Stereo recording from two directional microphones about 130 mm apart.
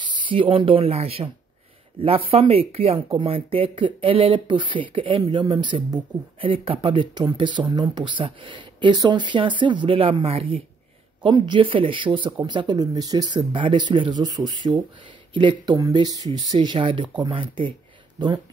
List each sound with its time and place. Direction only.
0.3 s speech: 40° right (ahead or behind)
16.6 s speech: 40° right (ahead or behind)